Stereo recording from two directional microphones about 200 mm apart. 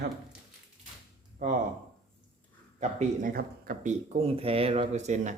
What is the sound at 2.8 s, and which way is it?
Speech, 40° right (ahead or behind).